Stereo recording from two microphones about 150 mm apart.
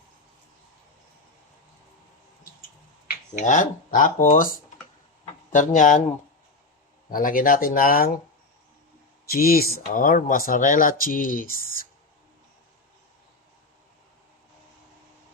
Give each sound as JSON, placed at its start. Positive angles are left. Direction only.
{"t": 3.3, "sound": "speech", "side_deg": 55}
{"t": 5.5, "sound": "speech", "side_deg": 60}
{"t": 7.1, "sound": "speech", "side_deg": 70}
{"t": 9.3, "sound": "speech", "side_deg": 90}